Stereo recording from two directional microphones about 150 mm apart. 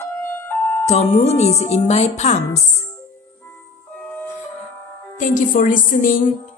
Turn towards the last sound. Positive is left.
turn(degrees=65)  # may be behind; listen again after turning